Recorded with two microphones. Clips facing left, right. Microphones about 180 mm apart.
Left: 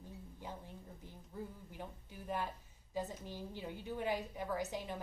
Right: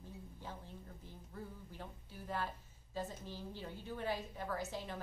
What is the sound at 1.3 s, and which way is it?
A woman's voice, 15° left (ahead or behind).